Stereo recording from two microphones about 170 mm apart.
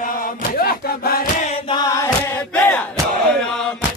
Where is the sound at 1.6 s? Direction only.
20° left (ahead or behind).